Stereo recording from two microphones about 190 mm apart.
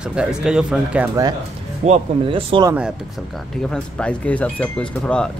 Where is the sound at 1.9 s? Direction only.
30° right (ahead or behind).